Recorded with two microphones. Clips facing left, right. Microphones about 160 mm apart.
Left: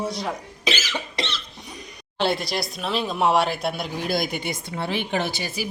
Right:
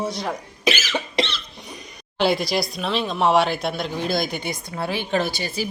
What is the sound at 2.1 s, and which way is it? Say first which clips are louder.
A woman's voice: right 3 dB; centre (ahead or behind).